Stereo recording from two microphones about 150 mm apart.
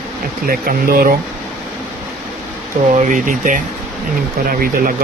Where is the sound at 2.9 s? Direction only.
60° right (ahead or behind).